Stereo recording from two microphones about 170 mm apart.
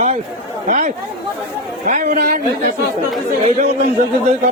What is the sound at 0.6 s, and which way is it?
A man's voice, 50° right (ahead or behind).